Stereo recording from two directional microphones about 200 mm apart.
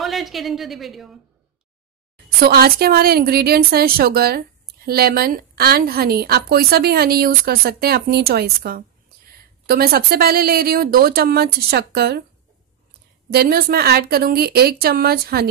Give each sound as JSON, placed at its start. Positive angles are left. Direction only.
{"t": 0.0, "sound": "a woman's voice", "side_deg": 0}
{"t": 2.2, "sound": "a woman's voice", "side_deg": -50}
{"t": 13.3, "sound": "a woman's voice", "side_deg": -50}